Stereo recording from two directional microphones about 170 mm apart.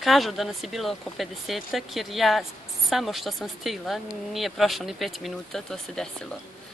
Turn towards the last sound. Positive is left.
turn(degrees=5)  # may be behind; listen again after turning